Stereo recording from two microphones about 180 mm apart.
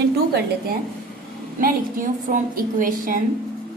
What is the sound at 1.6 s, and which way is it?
A woman's voice, 50° right (ahead or behind).